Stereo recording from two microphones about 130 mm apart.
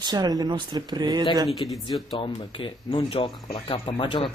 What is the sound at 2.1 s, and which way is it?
Speech, 40° left (ahead or behind).